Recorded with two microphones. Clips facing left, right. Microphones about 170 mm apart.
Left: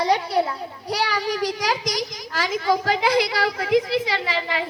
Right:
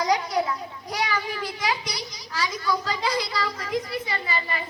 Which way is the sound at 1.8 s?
90° left.